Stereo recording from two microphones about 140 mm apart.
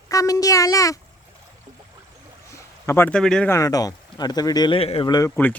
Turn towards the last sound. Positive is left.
turn(degrees=15)  # may be behind; listen again after turning